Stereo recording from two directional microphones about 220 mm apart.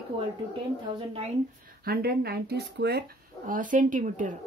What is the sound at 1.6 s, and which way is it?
A woman's voice, 45° right (ahead or behind).